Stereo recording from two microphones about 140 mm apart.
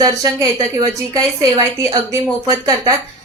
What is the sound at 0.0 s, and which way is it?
Speech, 25° right (ahead or behind).